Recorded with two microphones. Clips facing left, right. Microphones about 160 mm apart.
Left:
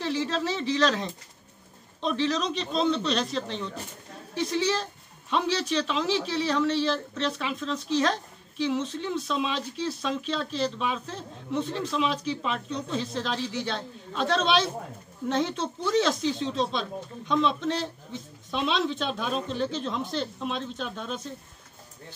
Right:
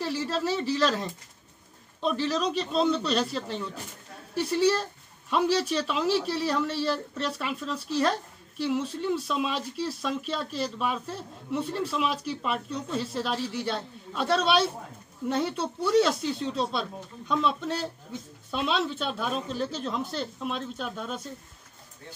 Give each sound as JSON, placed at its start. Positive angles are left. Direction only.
{"t": 0.0, "sound": "speech", "side_deg": -5}